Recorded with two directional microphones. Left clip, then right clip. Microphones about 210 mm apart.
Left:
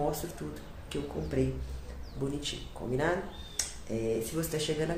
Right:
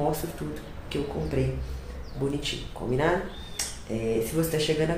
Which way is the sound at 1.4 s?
10° left (ahead or behind).